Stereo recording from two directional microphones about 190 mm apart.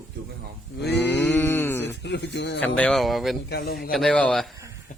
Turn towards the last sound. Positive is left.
turn(degrees=40)  # may be behind; listen again after turning